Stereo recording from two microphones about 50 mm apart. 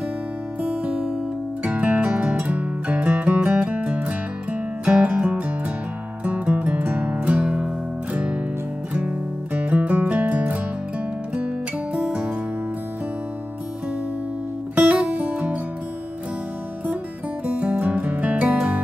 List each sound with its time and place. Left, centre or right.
0.7 s music: centre
11.3 s music: right
14.8 s music: right
17.5 s music: right